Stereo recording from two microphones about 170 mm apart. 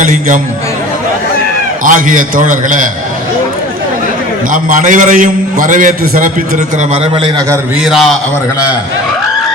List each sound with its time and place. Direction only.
0.0 s a man's voice: 50° right (ahead or behind)
1.8 s a man's voice: 50° right (ahead or behind)
4.5 s a man's voice: 50° right (ahead or behind)
6.9 s a man's voice: 35° right (ahead or behind)
7.8 s a man's voice: centre (ahead or behind)